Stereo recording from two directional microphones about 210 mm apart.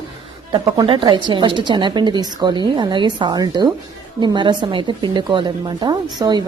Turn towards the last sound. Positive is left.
turn(degrees=-20)  # may be behind; listen again after turning